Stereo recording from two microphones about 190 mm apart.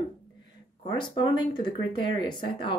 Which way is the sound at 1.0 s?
25° left (ahead or behind).